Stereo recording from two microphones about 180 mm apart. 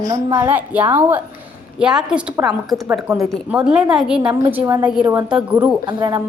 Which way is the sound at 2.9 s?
15° right (ahead or behind).